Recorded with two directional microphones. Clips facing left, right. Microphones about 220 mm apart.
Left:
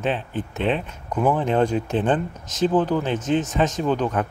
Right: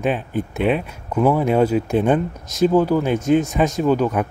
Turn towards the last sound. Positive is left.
turn(degrees=-10)  # may be behind; listen again after turning